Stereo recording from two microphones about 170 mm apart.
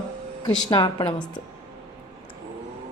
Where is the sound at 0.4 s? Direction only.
25° left (ahead or behind).